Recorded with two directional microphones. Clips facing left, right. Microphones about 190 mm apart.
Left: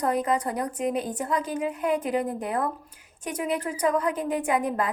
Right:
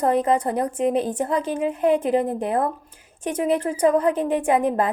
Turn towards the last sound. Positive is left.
turn(degrees=-30)  # may be behind; listen again after turning